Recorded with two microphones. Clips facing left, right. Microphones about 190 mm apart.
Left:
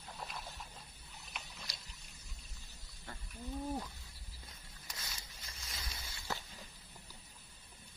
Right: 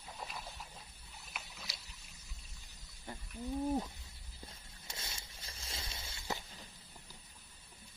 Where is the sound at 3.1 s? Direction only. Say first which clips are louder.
Right 4 dB; 20° right (ahead or behind).